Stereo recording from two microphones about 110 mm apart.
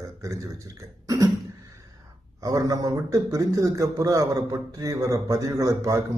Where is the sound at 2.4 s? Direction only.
30° right (ahead or behind).